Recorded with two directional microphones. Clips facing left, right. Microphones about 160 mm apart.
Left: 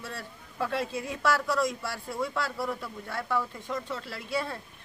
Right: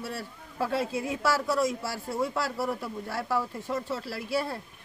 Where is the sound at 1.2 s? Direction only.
25° right (ahead or behind).